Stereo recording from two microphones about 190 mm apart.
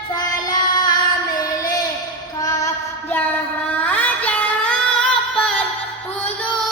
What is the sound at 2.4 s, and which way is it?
Child singing, 20° left (ahead or behind).